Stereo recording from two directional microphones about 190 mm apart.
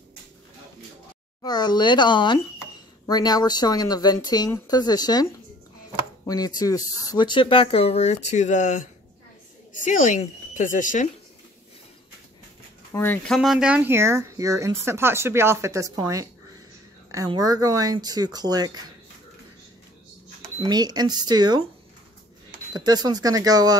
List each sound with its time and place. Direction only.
1.4 s speech: 20° left (ahead or behind); by 11.1 s 40° left (ahead or behind)
12.9 s speech: 10° left (ahead or behind)
13.4 s speech: 5° right (ahead or behind); by 18.9 s 20° right (ahead or behind)
20.6 s speech: 20° right (ahead or behind)
22.7 s speech: 20° right (ahead or behind)